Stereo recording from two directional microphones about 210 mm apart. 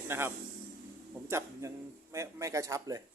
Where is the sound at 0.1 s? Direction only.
10° right (ahead or behind).